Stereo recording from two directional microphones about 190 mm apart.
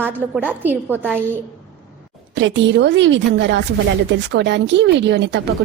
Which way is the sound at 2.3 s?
70° right (ahead or behind).